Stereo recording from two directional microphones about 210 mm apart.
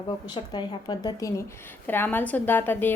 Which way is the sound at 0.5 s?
20° left (ahead or behind).